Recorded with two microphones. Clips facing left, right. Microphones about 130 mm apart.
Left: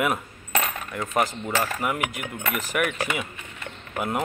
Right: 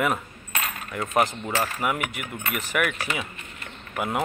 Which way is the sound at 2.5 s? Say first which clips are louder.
Right 1 dB; 45° left (ahead or behind).